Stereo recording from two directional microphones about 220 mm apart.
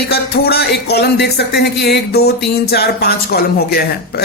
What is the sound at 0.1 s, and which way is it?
Speech, 45° left (ahead or behind).